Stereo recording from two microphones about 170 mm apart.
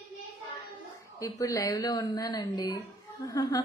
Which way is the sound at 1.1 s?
20° left (ahead or behind).